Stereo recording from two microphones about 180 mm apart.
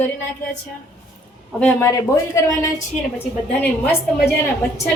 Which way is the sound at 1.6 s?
15° left (ahead or behind).